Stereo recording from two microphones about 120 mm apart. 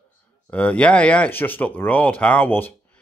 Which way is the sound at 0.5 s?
10° left (ahead or behind).